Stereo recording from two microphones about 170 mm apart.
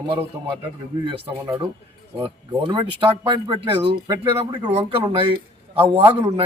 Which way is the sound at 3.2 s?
25° right (ahead or behind).